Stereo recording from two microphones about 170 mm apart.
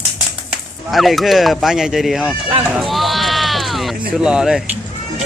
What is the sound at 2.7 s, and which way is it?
Sheep, centre (ahead or behind).